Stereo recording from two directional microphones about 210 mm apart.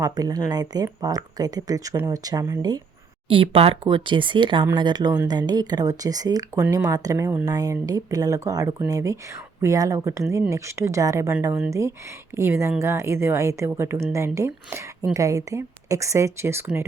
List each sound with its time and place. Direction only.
0.0 s a woman's voice: 15° right (ahead or behind)